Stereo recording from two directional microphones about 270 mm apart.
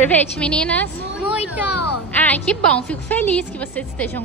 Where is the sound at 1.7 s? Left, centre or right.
Left.